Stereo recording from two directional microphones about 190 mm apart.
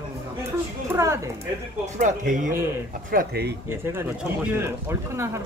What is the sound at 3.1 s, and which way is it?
Speech, 55° right (ahead or behind).